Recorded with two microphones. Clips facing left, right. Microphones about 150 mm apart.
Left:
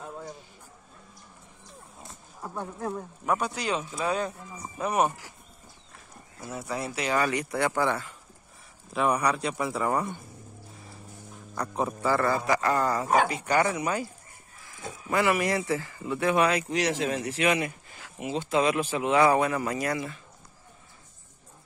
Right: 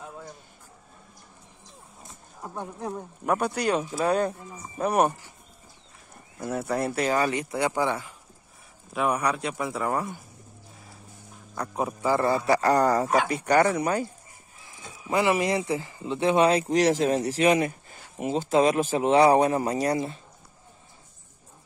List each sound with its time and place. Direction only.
2.4 s speech: 15° right (ahead or behind)
3.3 s speech: 55° right (ahead or behind)
6.4 s speech: 60° right (ahead or behind)
7.2 s speech: 25° right (ahead or behind)
8.9 s speech: 5° right (ahead or behind)
11.5 s speech: 10° right (ahead or behind)
12.4 s speech: 35° right (ahead or behind); by 13.8 s 50° right (ahead or behind)
15.0 s speech: 20° right (ahead or behind)